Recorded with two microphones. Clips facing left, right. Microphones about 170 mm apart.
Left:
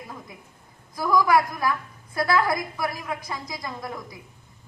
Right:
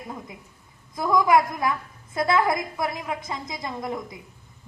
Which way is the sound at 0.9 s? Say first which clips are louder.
Right 1 dB; 20° right (ahead or behind).